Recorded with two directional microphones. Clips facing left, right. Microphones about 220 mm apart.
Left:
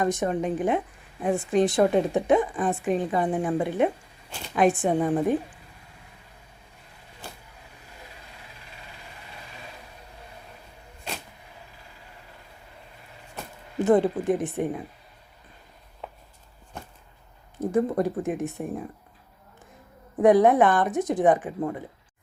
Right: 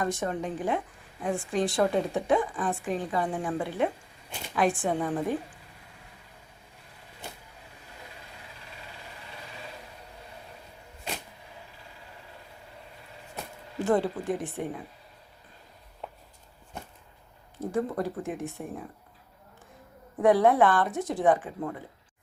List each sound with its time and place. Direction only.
0.0 s a woman's voice: 20° left (ahead or behind)
13.7 s a woman's voice: 20° left (ahead or behind)
17.7 s a woman's voice: 20° left (ahead or behind)
20.2 s a woman's voice: 20° left (ahead or behind)